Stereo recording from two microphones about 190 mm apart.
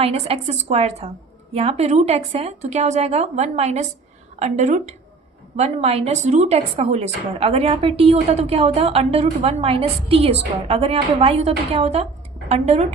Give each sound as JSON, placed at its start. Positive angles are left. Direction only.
{"t": 0.0, "sound": "a woman's voice", "side_deg": -30}